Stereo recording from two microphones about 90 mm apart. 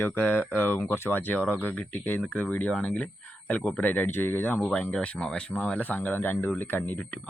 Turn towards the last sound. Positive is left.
turn(degrees=15)  # may be behind; listen again after turning